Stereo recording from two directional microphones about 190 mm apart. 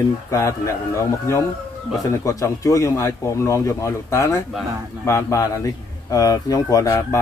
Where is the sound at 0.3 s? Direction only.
15° left (ahead or behind).